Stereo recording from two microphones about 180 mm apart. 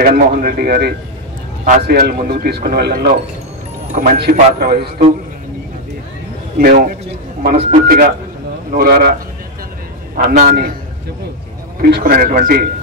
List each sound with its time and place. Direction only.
0.0 s speech: 55° right (ahead or behind)
6.6 s speech: 55° right (ahead or behind)
7.5 s speech: 45° right (ahead or behind)
8.7 s speech: 55° right (ahead or behind)
10.2 s speech: 45° right (ahead or behind)
11.8 s speech: 55° right (ahead or behind)